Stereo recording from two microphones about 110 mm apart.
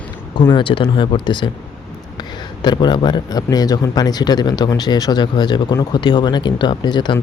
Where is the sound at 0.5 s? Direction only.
50° left (ahead or behind).